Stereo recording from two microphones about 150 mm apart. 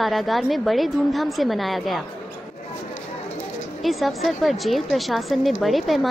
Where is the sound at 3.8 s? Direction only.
Centre (ahead or behind).